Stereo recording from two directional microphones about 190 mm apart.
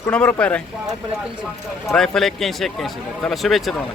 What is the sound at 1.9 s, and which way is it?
Speech, centre (ahead or behind).